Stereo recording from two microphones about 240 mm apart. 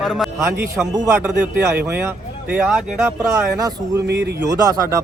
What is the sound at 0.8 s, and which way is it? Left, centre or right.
Speech, centre.